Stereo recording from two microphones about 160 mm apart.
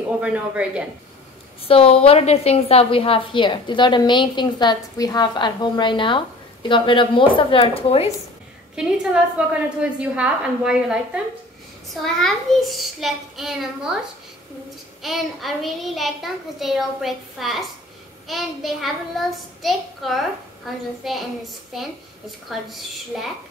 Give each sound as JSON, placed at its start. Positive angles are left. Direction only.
{"t": 0.2, "sound": "a woman's voice", "side_deg": -5}
{"t": 1.6, "sound": "a woman's voice", "side_deg": 35}
{"t": 8.7, "sound": "a woman's voice", "side_deg": -5}
{"t": 15.0, "sound": "a child's voice", "side_deg": 0}
{"t": 23.1, "sound": "a child's voice", "side_deg": 0}